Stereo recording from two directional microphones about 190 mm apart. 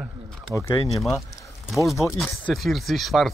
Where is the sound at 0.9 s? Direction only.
Centre (ahead or behind).